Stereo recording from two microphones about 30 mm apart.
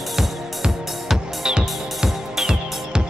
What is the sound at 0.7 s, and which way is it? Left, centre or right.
Music, centre.